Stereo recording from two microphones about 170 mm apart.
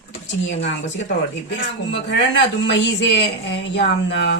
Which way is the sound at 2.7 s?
90° left.